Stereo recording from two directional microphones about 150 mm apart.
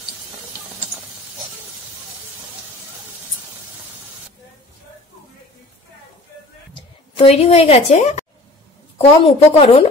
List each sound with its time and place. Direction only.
6.7 s a woman's voice: 40° left (ahead or behind)